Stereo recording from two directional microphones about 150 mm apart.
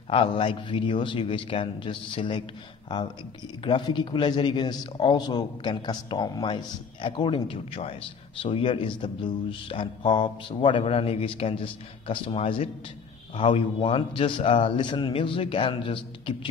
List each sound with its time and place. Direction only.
0.1 s a man's voice: 35° left (ahead or behind)
3.6 s a man's voice: 30° left (ahead or behind)